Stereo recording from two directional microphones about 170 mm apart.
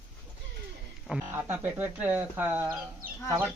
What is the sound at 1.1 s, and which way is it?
Speech, 10° right (ahead or behind).